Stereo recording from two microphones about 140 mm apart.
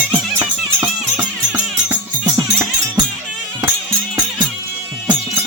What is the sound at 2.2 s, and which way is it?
Music, 25° right (ahead or behind).